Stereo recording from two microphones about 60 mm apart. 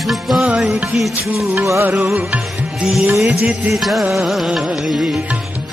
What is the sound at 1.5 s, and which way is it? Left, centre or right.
Music, right.